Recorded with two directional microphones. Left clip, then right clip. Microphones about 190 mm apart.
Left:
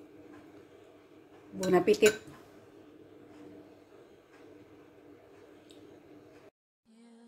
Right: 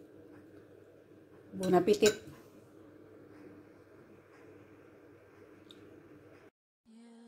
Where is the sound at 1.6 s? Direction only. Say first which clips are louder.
Left 2 dB; 15° right (ahead or behind).